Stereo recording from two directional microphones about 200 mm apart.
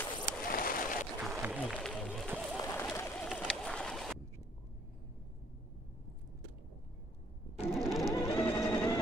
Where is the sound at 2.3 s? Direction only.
5° right (ahead or behind).